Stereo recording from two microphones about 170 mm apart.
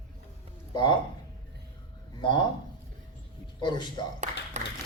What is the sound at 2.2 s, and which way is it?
Speech, 25° left (ahead or behind).